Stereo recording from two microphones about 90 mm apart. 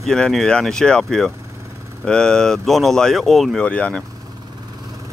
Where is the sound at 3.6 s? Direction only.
15° left (ahead or behind).